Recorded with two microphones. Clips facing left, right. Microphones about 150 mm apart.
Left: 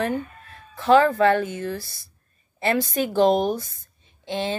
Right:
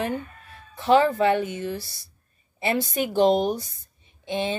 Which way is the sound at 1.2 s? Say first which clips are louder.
Left 2 dB; 15° right (ahead or behind).